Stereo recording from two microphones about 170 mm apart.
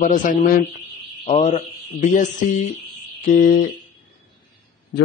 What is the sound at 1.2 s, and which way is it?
A man's voice, 40° left (ahead or behind).